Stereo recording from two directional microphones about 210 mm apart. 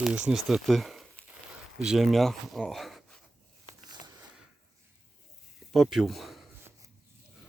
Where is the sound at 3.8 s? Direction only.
20° right (ahead or behind).